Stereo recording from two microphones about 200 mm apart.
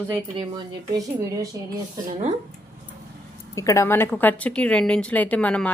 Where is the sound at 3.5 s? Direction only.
15° left (ahead or behind).